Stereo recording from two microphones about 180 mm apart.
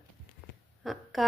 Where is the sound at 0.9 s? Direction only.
Centre (ahead or behind).